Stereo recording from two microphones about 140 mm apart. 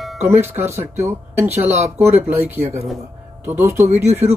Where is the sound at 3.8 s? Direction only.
50° right (ahead or behind).